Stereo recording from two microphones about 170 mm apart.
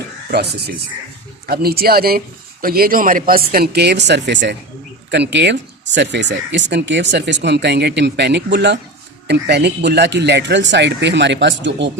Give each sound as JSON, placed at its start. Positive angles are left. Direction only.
{"t": 0.3, "sound": "speech", "side_deg": -65}